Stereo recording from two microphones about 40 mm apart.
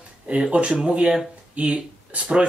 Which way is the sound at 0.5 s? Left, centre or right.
Right.